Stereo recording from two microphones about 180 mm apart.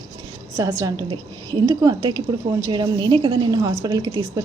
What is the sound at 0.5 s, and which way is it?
A woman's voice, 20° right (ahead or behind).